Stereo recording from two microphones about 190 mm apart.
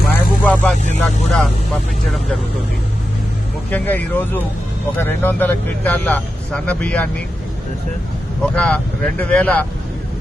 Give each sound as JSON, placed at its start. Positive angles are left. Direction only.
{"t": 0.1, "sound": "vehicle", "side_deg": 5}
{"t": 1.0, "sound": "speech", "side_deg": 5}
{"t": 3.7, "sound": "speech", "side_deg": 10}
{"t": 8.5, "sound": "speech", "side_deg": 5}